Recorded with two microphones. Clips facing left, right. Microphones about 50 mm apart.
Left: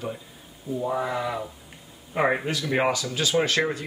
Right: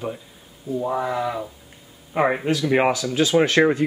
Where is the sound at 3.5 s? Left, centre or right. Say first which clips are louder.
Right 7 dB; right.